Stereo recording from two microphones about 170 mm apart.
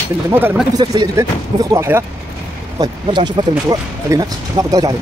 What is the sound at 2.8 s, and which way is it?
Speech, 25° right (ahead or behind).